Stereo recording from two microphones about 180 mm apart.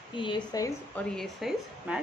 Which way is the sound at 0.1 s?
25° left (ahead or behind).